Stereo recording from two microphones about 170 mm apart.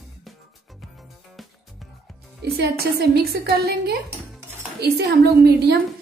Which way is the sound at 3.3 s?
65° right (ahead or behind).